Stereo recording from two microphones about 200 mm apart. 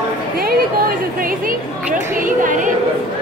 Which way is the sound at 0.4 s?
50° right (ahead or behind).